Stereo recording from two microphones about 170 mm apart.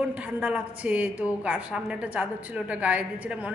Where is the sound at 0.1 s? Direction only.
5° right (ahead or behind).